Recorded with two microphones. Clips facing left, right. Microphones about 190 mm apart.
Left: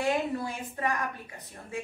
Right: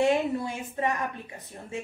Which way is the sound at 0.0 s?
25° right (ahead or behind).